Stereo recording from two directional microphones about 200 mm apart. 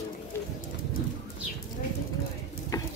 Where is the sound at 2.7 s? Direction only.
15° left (ahead or behind).